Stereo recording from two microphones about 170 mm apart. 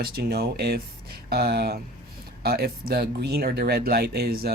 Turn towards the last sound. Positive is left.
turn(degrees=-65)  # may be behind; listen again after turning